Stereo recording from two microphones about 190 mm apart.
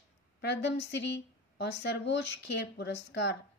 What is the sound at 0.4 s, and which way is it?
A woman's voice, 65° left (ahead or behind).